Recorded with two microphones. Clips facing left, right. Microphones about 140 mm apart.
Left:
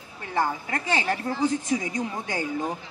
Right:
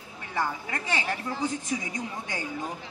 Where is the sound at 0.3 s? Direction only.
40° left (ahead or behind).